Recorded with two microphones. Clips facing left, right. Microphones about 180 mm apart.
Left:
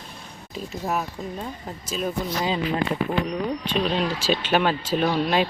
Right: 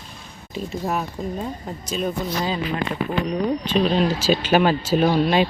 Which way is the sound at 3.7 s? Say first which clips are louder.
Right 5 dB; centre (ahead or behind).